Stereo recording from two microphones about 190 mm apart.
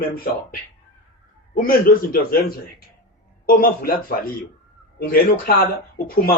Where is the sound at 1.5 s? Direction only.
50° left (ahead or behind).